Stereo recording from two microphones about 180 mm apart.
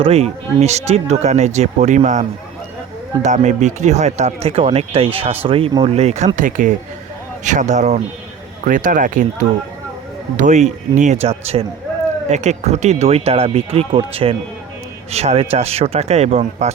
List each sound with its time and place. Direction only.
0.0 s speech: 35° right (ahead or behind)
3.2 s speech: 40° right (ahead or behind)
10.3 s speech: 40° right (ahead or behind)